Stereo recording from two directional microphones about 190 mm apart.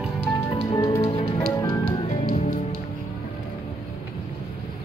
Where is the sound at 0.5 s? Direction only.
25° left (ahead or behind).